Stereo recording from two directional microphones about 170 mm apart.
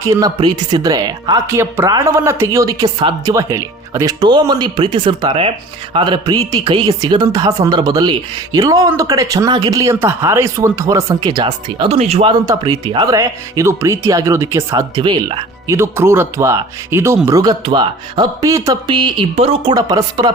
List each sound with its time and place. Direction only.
0.0 s speech: 20° right (ahead or behind)
11.9 s speech: 40° right (ahead or behind)
12.3 s speech: 25° right (ahead or behind)